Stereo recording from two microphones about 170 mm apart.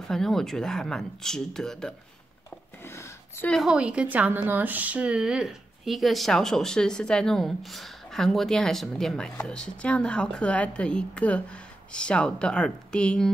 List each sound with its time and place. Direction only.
0.1 s speech: centre (ahead or behind)
2.8 s a sound: 15° left (ahead or behind)
3.4 s speech: centre (ahead or behind)